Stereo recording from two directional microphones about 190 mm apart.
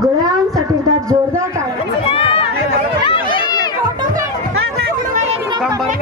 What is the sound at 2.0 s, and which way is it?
Chatter, 30° left (ahead or behind).